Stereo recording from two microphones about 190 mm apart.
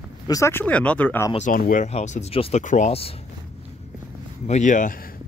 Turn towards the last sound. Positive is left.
turn(degrees=40)  # may be behind; listen again after turning